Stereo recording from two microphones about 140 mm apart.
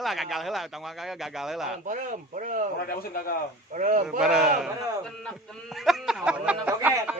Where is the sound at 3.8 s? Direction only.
65° right (ahead or behind).